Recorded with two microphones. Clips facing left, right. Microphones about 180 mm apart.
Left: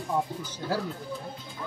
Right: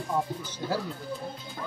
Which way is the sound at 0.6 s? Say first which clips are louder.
Even; 10° right (ahead or behind).